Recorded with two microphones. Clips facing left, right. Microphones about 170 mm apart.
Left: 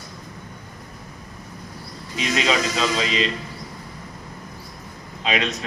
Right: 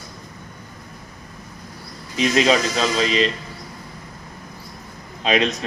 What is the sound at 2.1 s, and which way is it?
Speech, 35° right (ahead or behind).